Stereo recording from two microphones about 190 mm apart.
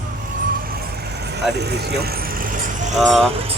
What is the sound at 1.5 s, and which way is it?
Vehicle, 60° right (ahead or behind).